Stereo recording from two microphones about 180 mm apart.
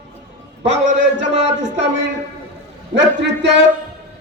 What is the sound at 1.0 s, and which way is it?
A man's voice, 85° right.